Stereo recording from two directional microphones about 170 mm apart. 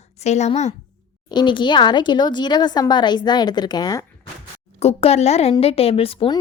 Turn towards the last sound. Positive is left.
turn(degrees=30)  # may be behind; listen again after turning